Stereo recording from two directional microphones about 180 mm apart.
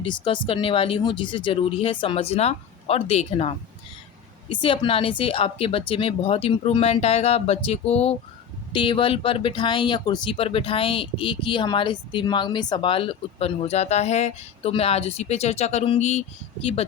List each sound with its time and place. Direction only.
0.0 s speech: 25° left (ahead or behind)